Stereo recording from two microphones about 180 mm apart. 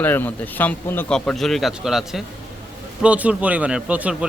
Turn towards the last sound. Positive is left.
turn(degrees=-5)  # may be behind; listen again after turning